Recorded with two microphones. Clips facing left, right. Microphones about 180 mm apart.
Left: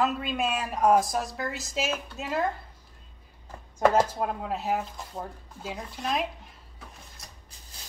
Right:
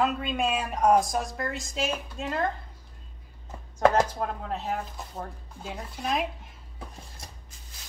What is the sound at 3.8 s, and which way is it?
A woman's voice, 5° left (ahead or behind).